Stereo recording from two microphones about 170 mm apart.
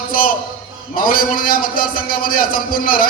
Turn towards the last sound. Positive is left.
turn(degrees=60)  # may be behind; listen again after turning